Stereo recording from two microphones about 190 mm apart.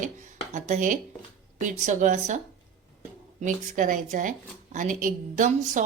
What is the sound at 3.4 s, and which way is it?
A woman's voice, 45° right (ahead or behind).